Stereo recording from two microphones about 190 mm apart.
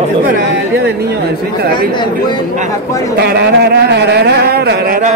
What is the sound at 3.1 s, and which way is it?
Speech, 60° right (ahead or behind).